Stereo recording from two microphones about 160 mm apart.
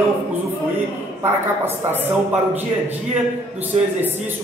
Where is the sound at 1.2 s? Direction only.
15° right (ahead or behind).